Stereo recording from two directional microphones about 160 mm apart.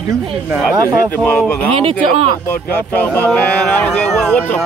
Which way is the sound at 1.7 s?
35° right (ahead or behind).